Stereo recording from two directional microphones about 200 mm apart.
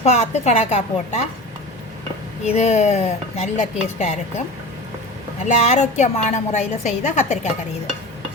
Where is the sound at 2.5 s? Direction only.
35° left (ahead or behind).